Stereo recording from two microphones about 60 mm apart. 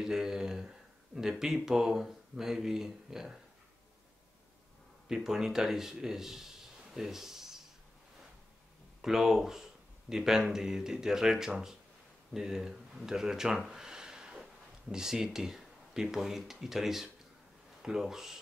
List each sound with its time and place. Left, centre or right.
0.0 s a sound: centre
1.4 s speech: centre
5.0 s a man's voice: centre
9.0 s speech: centre
13.7 s a sound: centre
16.6 s speech: centre